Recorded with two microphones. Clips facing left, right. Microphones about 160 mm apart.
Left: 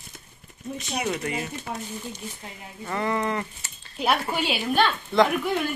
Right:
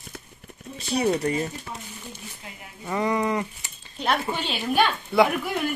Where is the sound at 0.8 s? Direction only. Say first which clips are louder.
Right 6 dB; 35° right (ahead or behind).